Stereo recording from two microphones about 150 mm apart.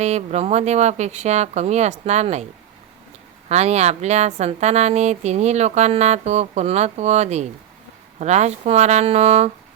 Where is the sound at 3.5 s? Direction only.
45° right (ahead or behind).